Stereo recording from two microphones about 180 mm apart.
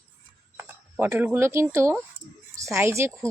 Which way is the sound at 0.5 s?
15° right (ahead or behind).